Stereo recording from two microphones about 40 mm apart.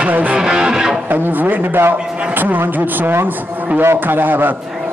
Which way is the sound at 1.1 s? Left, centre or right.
Right.